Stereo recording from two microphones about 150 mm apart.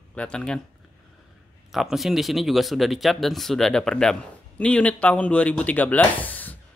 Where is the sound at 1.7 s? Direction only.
Centre (ahead or behind).